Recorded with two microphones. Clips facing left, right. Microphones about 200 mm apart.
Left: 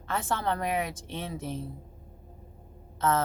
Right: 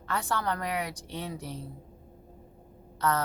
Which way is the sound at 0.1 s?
20° left (ahead or behind).